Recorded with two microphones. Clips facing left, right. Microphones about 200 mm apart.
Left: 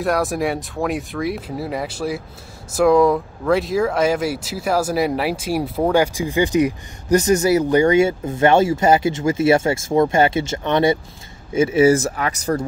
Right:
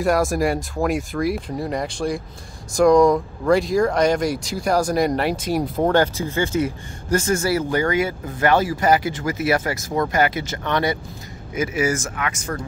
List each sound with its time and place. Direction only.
0.0 s speech: centre (ahead or behind); by 12.5 s 35° left (ahead or behind)